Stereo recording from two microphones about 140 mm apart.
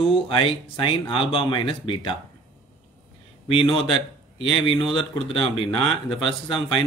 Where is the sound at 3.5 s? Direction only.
40° left (ahead or behind).